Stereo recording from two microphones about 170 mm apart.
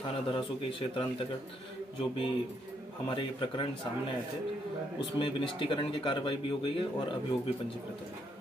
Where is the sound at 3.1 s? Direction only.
30° left (ahead or behind).